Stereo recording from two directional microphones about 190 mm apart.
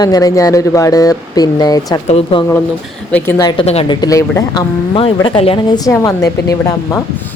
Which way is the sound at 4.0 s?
20° left (ahead or behind).